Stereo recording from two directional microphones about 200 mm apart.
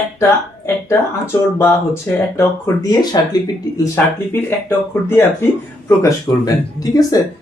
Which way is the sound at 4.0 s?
10° left (ahead or behind).